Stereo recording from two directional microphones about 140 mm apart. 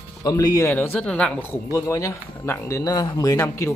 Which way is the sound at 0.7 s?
10° left (ahead or behind).